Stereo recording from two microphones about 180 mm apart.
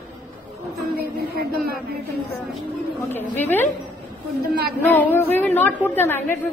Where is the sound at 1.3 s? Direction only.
55° right (ahead or behind).